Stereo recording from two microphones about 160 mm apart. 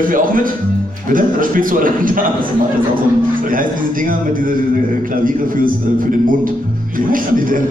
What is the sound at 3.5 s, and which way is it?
A man's voice, 60° right (ahead or behind).